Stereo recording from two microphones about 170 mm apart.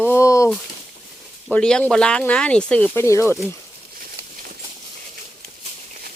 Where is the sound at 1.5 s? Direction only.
5° left (ahead or behind).